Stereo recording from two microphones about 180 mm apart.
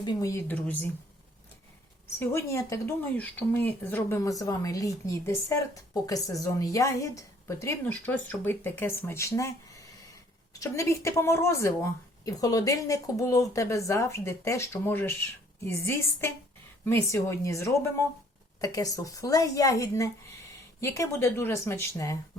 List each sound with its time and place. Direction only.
0.0 s speech: 20° left (ahead or behind)
2.1 s speech: 15° left (ahead or behind)
10.5 s a woman's voice: 15° left (ahead or behind)